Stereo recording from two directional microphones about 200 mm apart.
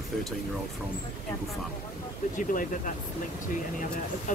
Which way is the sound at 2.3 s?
40° left (ahead or behind).